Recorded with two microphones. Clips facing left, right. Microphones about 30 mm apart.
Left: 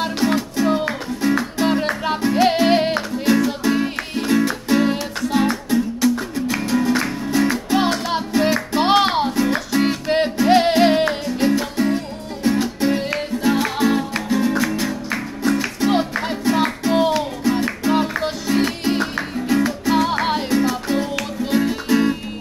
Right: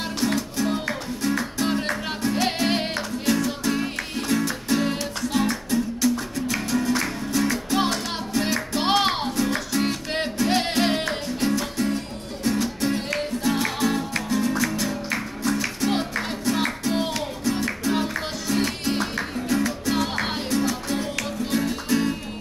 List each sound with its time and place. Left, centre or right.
0.0 s music: left